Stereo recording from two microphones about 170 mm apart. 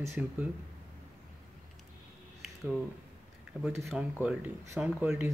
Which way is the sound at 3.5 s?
10° right (ahead or behind).